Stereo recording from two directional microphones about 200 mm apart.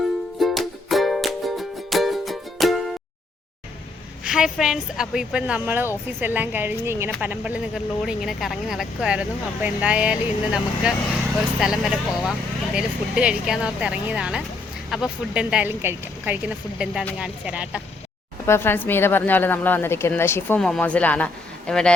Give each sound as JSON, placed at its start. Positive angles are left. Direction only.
{"t": 0.3, "sound": "music", "side_deg": 0}
{"t": 4.2, "sound": "speech", "side_deg": -5}
{"t": 18.4, "sound": "a woman's voice", "side_deg": 10}